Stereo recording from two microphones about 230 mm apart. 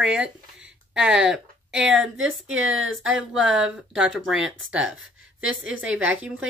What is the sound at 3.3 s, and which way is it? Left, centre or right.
Speech, centre.